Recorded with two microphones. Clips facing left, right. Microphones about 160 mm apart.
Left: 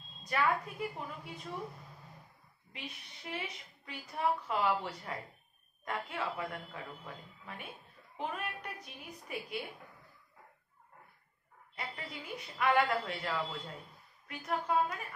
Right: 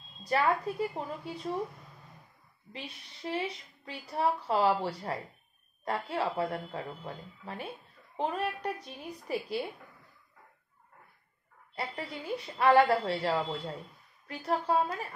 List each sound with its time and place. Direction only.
0.2 s a woman's voice: 35° right (ahead or behind)
2.7 s a woman's voice: 30° right (ahead or behind)
11.7 s a woman's voice: 35° right (ahead or behind)